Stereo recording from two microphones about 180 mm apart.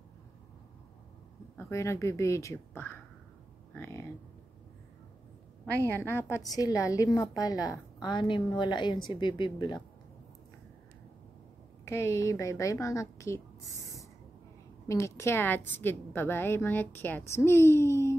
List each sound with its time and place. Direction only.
1.6 s a woman's voice: 15° left (ahead or behind)
3.7 s a sound: 15° left (ahead or behind)
5.9 s a woman's voice: 10° left (ahead or behind)
11.8 s a woman's voice: 15° left (ahead or behind)
14.9 s a woman's voice: 15° left (ahead or behind)